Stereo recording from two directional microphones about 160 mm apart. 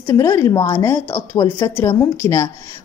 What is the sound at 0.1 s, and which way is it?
A woman's voice, 20° left (ahead or behind).